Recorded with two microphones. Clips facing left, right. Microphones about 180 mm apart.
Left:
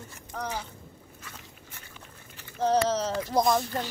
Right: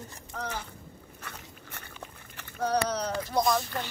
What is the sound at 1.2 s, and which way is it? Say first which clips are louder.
Walk: right 4 dB; 65° right (ahead or behind).